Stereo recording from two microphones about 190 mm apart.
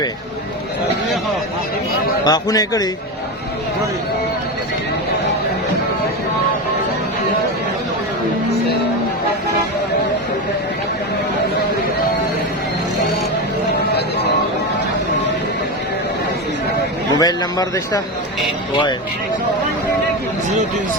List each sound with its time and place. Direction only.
2.2 s a man's voice: 20° left (ahead or behind)
17.2 s a man's voice: 20° left (ahead or behind)